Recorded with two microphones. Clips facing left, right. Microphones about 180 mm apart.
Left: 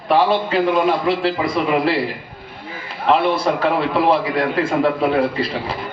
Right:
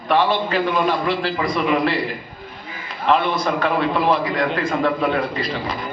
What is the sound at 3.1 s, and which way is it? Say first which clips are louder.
A man's voice: left 2 dB; 30° left (ahead or behind).